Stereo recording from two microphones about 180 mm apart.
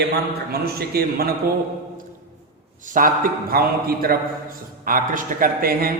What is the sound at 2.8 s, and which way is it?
A man's voice, 50° right (ahead or behind).